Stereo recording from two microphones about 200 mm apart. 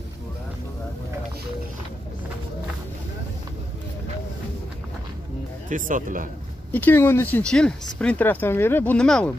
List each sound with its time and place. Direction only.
5.7 s speech: 40° right (ahead or behind)
6.7 s speech: 10° left (ahead or behind)